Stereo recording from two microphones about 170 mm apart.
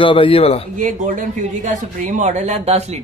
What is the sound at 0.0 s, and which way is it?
Speech, 30° left (ahead or behind).